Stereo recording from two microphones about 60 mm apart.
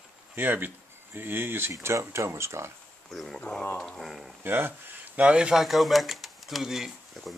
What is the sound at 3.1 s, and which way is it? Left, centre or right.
Speech, centre.